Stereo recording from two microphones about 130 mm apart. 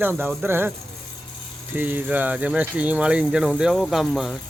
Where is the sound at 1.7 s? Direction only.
15° right (ahead or behind).